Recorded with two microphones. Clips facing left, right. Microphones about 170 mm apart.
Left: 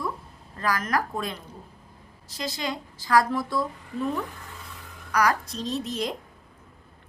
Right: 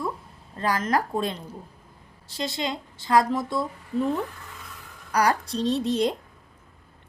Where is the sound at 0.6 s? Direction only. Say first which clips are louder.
Right 2 dB; 25° right (ahead or behind).